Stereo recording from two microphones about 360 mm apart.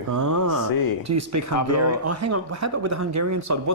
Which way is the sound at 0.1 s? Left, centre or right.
Right.